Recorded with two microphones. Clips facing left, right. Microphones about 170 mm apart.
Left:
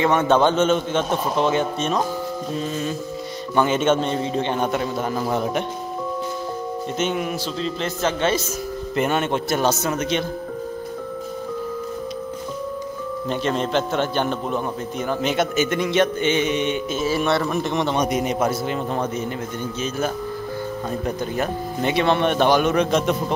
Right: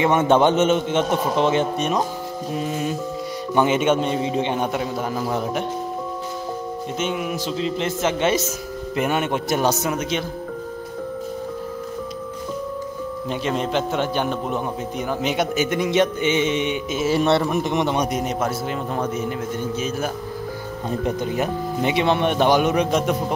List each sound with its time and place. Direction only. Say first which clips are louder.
0.0 s a man's voice: right 1 dB; 20° right (ahead or behind); by 5.6 s 5° right (ahead or behind)
7.0 s a man's voice: left 1 dB; 5° right (ahead or behind)
7.5 s a man's voice: right 2 dB; 20° right (ahead or behind)
8.9 s a man's voice: even; 10° right (ahead or behind)
13.3 s a man's voice: left 1 dB; 5° right (ahead or behind)
17.1 s a man's voice: right 3 dB; 25° right (ahead or behind)
17.5 s a man's voice: right 1 dB; 15° right (ahead or behind)
18.0 s a man's voice: left 2 dB; centre (ahead or behind)
21.0 s a man's voice: right 3 dB; 20° right (ahead or behind)